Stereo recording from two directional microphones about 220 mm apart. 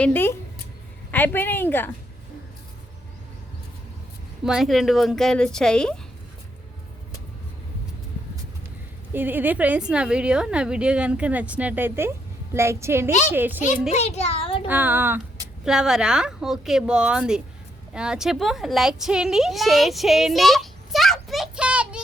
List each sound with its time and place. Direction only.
0.0 s speech: 10° left (ahead or behind)
4.4 s a woman's voice: centre (ahead or behind)
9.1 s a woman's voice: 10° right (ahead or behind)
13.9 s a child's voice: 30° left (ahead or behind)
14.7 s a woman's voice: 10° right (ahead or behind)